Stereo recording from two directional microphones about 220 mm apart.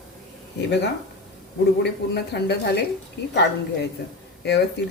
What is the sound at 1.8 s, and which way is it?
A woman's voice, 50° left (ahead or behind).